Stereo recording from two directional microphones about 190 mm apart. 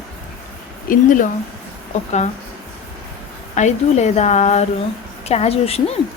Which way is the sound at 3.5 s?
35° left (ahead or behind).